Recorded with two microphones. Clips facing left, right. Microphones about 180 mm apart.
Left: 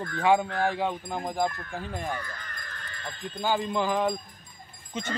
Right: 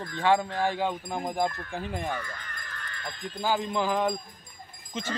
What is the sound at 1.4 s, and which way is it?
Speech, 15° right (ahead or behind).